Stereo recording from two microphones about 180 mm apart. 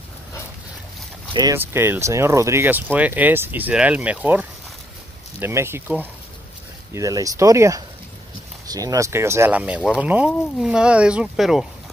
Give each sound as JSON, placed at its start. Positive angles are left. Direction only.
{"t": 1.3, "sound": "speech", "side_deg": -20}